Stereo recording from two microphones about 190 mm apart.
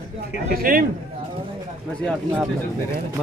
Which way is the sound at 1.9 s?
5° left (ahead or behind).